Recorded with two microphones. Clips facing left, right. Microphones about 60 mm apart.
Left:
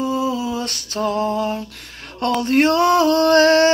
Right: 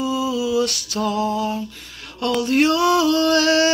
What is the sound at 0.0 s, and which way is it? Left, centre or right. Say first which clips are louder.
Music: left 1 dB; left.